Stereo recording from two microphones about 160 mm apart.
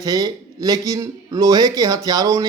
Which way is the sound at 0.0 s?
25° right (ahead or behind).